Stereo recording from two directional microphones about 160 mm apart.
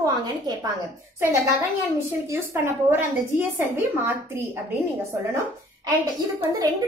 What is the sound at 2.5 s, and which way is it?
A woman's voice, 15° right (ahead or behind).